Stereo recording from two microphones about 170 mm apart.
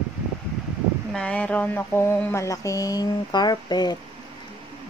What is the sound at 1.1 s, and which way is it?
A woman's voice, 5° left (ahead or behind).